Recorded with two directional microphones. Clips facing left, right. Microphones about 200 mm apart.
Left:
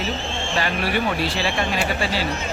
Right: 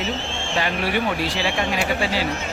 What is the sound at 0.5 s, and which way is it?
Speech, 20° right (ahead or behind).